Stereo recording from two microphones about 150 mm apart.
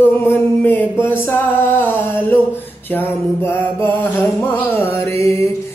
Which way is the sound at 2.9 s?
15° left (ahead or behind).